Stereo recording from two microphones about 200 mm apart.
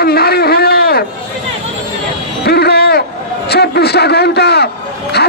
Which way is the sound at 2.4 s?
55° left (ahead or behind).